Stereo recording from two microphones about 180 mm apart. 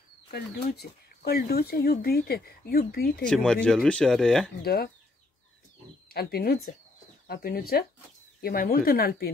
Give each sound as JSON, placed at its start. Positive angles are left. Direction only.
{"t": 0.3, "sound": "speech", "side_deg": 60}
{"t": 3.3, "sound": "speech", "side_deg": 5}
{"t": 6.0, "sound": "speech", "side_deg": 60}